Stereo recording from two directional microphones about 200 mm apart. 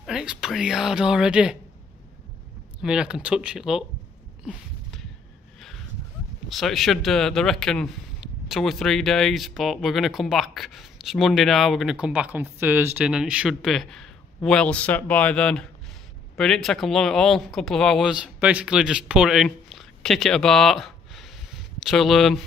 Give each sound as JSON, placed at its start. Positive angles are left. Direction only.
{"t": 0.0, "sound": "speech", "side_deg": -5}
{"t": 2.8, "sound": "speech", "side_deg": -5}
{"t": 6.5, "sound": "speech", "side_deg": 0}